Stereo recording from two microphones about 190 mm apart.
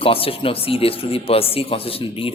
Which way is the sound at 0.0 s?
30° left (ahead or behind).